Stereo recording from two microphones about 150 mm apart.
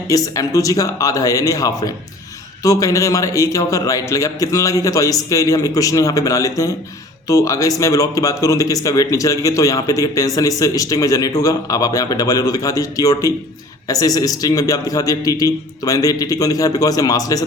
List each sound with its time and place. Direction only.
0.1 s a man's voice: 25° left (ahead or behind)